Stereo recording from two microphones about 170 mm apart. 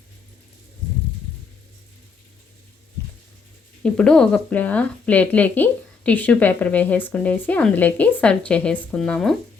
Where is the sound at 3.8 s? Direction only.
5° left (ahead or behind).